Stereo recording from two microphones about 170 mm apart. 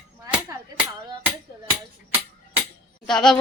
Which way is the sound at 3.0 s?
5° left (ahead or behind).